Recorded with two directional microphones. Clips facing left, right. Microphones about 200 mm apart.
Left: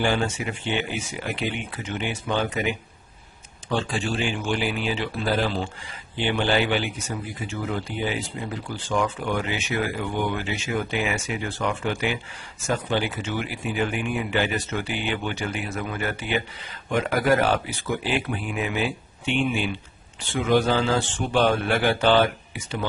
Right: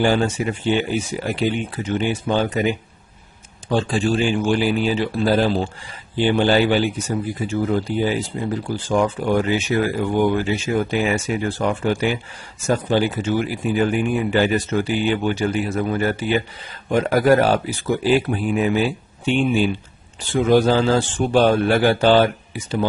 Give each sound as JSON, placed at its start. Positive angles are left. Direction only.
{"t": 0.0, "sound": "speech", "side_deg": -40}
{"t": 3.7, "sound": "speech", "side_deg": -35}
{"t": 8.6, "sound": "speech", "side_deg": -40}